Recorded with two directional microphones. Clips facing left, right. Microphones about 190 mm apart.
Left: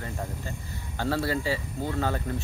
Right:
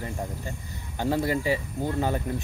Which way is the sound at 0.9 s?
15° right (ahead or behind).